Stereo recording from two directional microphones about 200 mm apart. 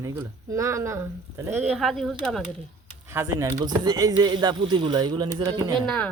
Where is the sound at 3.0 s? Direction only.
15° right (ahead or behind).